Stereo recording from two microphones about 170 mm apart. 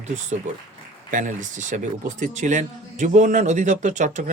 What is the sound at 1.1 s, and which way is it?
A man's voice, 45° right (ahead or behind).